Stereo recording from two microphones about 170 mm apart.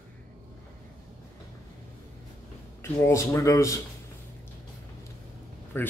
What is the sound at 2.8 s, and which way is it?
Speech, 15° left (ahead or behind).